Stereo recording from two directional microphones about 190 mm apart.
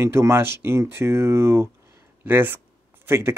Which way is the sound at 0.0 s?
15° right (ahead or behind).